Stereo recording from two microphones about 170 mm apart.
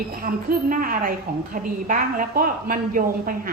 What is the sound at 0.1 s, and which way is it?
A woman's voice, 60° right (ahead or behind).